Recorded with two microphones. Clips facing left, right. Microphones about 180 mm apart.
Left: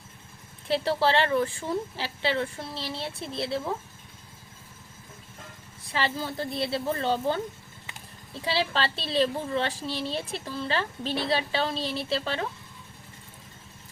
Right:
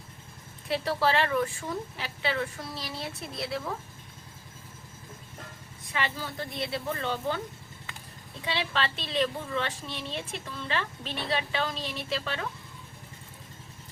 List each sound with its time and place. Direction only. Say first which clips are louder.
0.7 s a woman's voice: left 3 dB; 30° left (ahead or behind)
5.9 s a woman's voice: left 4 dB; 30° left (ahead or behind)